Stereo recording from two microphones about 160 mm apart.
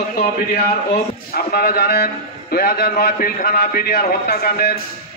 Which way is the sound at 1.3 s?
70° left (ahead or behind).